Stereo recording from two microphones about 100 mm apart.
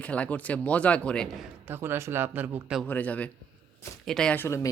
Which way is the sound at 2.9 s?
15° left (ahead or behind).